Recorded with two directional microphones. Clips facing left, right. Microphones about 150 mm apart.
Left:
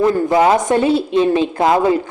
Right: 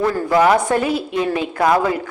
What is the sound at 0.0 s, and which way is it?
A woman's voice, 20° left (ahead or behind).